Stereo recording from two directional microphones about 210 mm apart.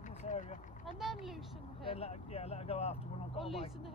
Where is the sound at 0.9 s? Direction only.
Centre (ahead or behind).